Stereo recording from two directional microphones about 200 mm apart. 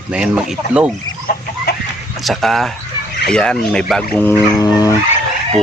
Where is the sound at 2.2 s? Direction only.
Centre (ahead or behind).